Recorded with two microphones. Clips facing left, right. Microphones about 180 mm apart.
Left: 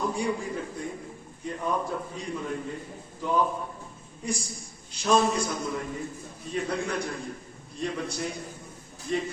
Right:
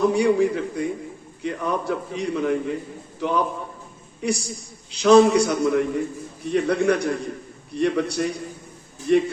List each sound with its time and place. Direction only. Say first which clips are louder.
0.0 s a man's voice: right 11 dB; 75° right (ahead or behind)